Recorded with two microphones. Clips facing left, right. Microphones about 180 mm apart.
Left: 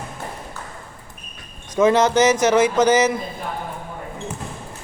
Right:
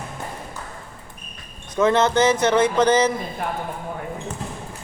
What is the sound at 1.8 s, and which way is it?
A man's voice, 10° left (ahead or behind).